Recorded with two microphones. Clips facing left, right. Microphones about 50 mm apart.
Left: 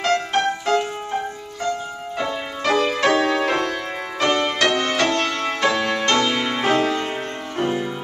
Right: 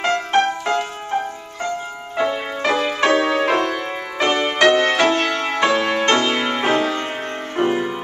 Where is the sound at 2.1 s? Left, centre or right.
Centre.